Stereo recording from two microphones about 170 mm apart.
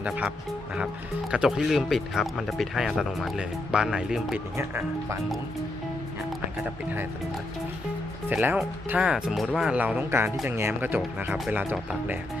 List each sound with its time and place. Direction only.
0.0 s speech: 10° right (ahead or behind)
4.5 s speech: 15° right (ahead or behind)
8.3 s speech: 10° right (ahead or behind)